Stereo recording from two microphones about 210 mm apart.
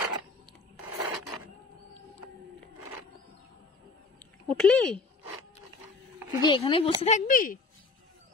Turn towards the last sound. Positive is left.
turn(degrees=40)  # may be behind; listen again after turning